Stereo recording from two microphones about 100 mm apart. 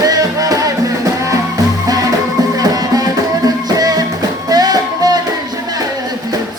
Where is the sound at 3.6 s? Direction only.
40° right (ahead or behind).